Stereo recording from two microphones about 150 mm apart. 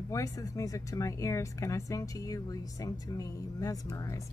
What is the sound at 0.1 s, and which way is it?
Speech, 20° left (ahead or behind).